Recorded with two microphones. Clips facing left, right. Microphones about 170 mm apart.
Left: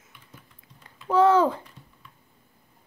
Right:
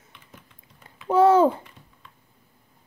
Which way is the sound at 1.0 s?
25° right (ahead or behind).